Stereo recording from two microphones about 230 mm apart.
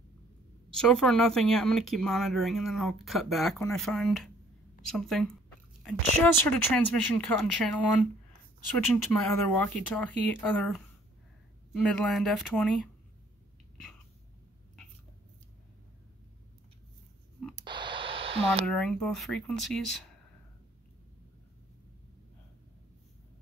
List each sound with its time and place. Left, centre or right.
0.7 s speech: centre
8.7 s speech: centre
17.6 s a sound: right
18.7 s speech: centre